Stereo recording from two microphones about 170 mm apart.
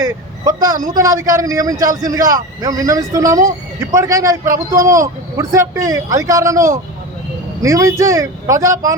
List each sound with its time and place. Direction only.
0.4 s a man's voice: 20° right (ahead or behind)